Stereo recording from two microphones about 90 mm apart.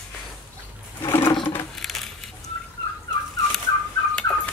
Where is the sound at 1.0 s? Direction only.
25° left (ahead or behind).